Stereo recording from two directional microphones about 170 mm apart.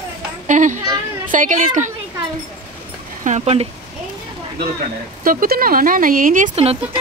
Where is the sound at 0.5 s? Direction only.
45° right (ahead or behind).